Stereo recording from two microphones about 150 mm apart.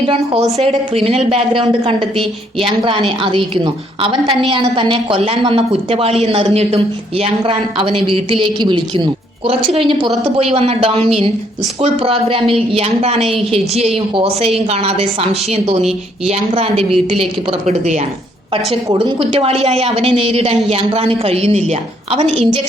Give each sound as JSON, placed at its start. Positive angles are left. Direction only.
{"t": 0.5, "sound": "a woman's voice", "side_deg": -45}
{"t": 3.1, "sound": "a woman's voice", "side_deg": -35}
{"t": 18.9, "sound": "speech", "side_deg": -30}